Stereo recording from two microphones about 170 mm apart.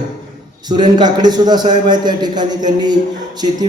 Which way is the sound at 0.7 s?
25° right (ahead or behind).